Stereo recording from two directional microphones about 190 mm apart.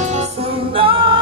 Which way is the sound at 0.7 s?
25° right (ahead or behind).